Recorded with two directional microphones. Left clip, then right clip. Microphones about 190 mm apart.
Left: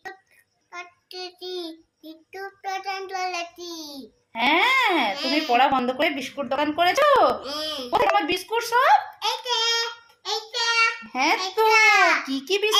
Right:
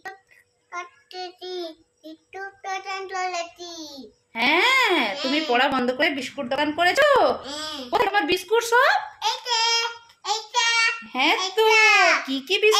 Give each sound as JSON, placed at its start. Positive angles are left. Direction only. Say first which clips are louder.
{"t": 0.7, "sound": "child singing", "louder": "right 3 dB", "side_deg": -5}
{"t": 5.5, "sound": "a woman's voice", "louder": "left 2 dB", "side_deg": -10}
{"t": 10.2, "sound": "child singing", "louder": "right 3 dB", "side_deg": -15}
{"t": 11.1, "sound": "a child's voice", "louder": "right 1 dB", "side_deg": -5}
{"t": 11.7, "sound": "a child's voice", "louder": "even", "side_deg": -20}
{"t": 12.5, "sound": "speech", "louder": "right 4 dB", "side_deg": -5}